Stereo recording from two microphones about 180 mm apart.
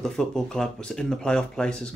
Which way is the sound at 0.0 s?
5° left (ahead or behind).